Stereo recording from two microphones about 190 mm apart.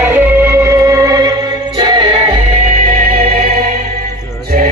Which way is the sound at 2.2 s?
40° right (ahead or behind).